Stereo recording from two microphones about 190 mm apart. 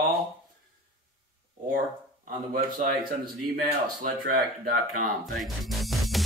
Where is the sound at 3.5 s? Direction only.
45° right (ahead or behind).